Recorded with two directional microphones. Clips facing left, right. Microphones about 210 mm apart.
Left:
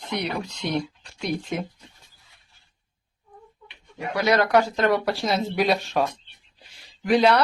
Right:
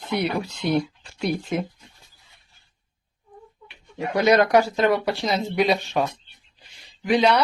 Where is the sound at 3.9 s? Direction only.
20° right (ahead or behind).